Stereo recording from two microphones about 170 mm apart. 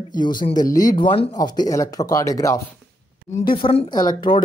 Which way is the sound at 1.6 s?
20° left (ahead or behind).